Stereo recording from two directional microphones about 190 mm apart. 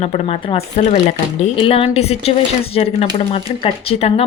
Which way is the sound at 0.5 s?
35° left (ahead or behind).